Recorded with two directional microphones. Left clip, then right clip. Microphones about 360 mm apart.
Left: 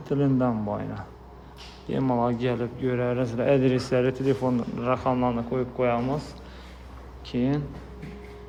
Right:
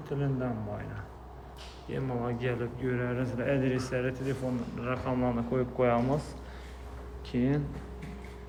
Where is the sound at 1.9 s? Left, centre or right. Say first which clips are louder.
Left 9 dB; centre.